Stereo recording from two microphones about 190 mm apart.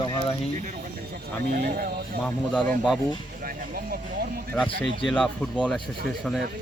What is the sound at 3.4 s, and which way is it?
Speech, 50° right (ahead or behind).